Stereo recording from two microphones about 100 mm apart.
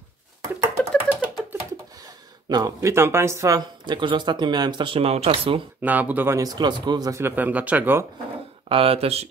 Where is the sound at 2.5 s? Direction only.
40° right (ahead or behind).